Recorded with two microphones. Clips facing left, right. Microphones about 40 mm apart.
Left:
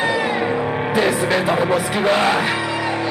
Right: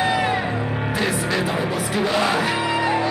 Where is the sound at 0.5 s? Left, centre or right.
Left.